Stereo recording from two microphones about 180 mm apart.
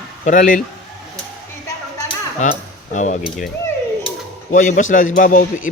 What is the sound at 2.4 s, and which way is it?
Cutlery, 45° left (ahead or behind).